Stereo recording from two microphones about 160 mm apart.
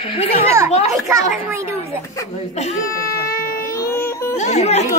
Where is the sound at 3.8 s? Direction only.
15° left (ahead or behind).